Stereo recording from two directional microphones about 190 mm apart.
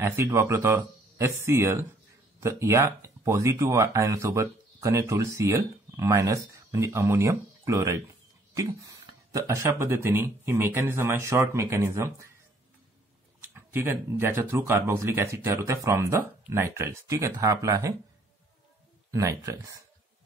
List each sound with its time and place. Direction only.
0.0 s speech: 15° right (ahead or behind)
9.3 s speech: 15° right (ahead or behind)
13.4 s speech: 10° right (ahead or behind)
19.1 s speech: 15° right (ahead or behind)